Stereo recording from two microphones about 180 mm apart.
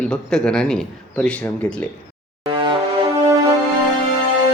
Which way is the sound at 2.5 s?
20° right (ahead or behind).